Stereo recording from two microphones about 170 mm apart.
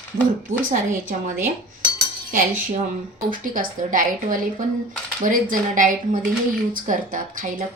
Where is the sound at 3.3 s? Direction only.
50° right (ahead or behind).